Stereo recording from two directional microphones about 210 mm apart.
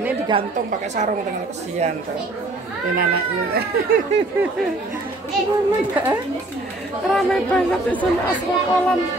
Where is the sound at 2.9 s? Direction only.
45° right (ahead or behind).